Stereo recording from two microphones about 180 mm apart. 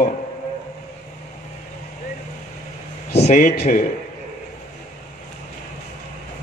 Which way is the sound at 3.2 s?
40° left (ahead or behind).